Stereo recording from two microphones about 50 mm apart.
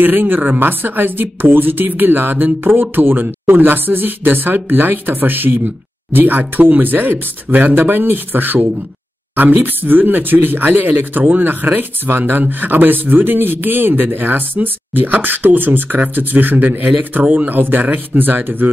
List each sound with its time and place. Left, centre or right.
0.0 s speech: right